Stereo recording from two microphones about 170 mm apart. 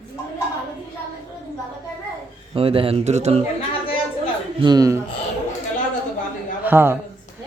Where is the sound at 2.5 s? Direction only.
35° right (ahead or behind).